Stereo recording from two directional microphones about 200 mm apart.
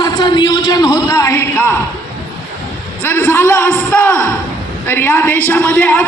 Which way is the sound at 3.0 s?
10° left (ahead or behind).